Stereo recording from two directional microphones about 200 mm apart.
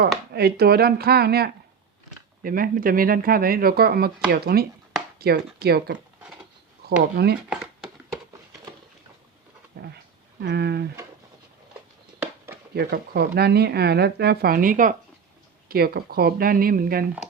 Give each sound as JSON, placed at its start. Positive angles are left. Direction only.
{"t": 0.3, "sound": "speech", "side_deg": -50}
{"t": 7.5, "sound": "a sound", "side_deg": -5}
{"t": 10.4, "sound": "speech", "side_deg": -55}
{"t": 12.7, "sound": "speech", "side_deg": -55}